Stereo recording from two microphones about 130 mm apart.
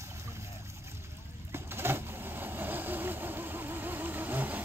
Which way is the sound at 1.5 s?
15° right (ahead or behind).